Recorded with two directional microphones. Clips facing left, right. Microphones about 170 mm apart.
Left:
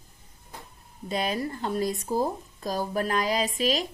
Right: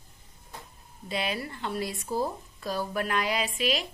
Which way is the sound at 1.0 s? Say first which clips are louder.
Left 4 dB; 45° left (ahead or behind).